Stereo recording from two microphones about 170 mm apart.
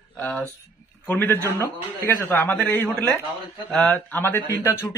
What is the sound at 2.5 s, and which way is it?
Speech, 5° left (ahead or behind).